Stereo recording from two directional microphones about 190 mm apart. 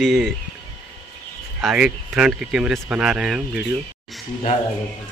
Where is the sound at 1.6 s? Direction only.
Centre (ahead or behind).